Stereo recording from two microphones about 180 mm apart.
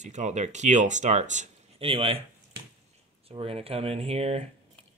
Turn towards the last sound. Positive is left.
turn(degrees=-35)  # may be behind; listen again after turning